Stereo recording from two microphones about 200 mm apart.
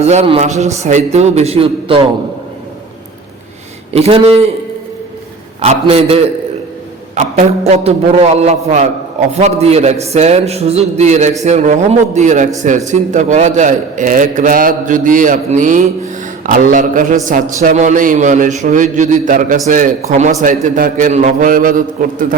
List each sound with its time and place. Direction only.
0.0 s a man's voice: 35° right (ahead or behind)
3.9 s a man's voice: 30° right (ahead or behind)
5.6 s a man's voice: 30° right (ahead or behind)